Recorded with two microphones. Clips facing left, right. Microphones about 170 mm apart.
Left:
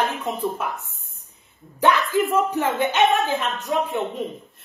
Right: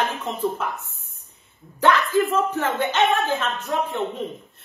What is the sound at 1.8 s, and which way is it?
A man's voice, 15° left (ahead or behind).